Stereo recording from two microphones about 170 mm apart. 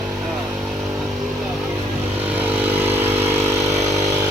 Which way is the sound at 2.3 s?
10° right (ahead or behind).